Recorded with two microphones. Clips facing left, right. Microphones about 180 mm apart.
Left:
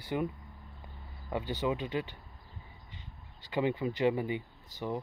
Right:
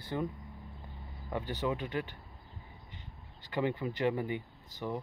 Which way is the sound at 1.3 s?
15° left (ahead or behind).